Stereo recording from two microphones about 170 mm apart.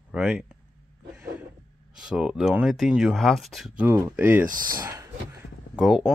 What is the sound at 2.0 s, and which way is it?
Speech, 5° right (ahead or behind).